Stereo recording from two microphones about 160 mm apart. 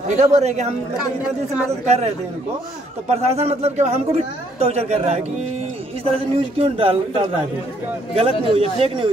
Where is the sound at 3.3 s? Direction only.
40° right (ahead or behind).